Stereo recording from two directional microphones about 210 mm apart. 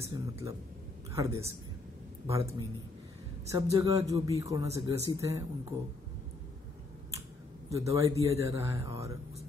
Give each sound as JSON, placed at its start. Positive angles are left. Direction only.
{"t": 0.0, "sound": "speech", "side_deg": -15}
{"t": 3.7, "sound": "speech", "side_deg": -15}
{"t": 7.7, "sound": "speech", "side_deg": -15}